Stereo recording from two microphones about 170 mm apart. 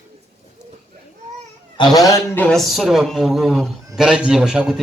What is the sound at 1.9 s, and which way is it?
Speech, 20° left (ahead or behind).